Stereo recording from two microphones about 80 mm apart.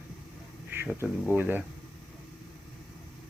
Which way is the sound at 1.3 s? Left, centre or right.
Right.